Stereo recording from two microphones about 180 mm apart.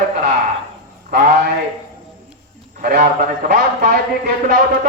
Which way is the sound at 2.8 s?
50° right (ahead or behind).